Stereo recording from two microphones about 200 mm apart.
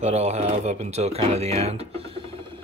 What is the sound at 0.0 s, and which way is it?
Speech, 35° right (ahead or behind).